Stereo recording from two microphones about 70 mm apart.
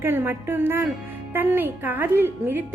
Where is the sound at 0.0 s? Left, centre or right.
Right.